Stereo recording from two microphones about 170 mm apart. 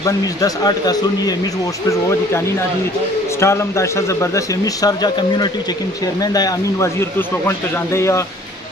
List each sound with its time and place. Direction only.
0.0 s a man's voice: 20° left (ahead or behind)